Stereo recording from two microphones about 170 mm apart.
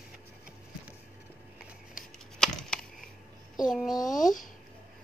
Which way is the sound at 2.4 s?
5° left (ahead or behind).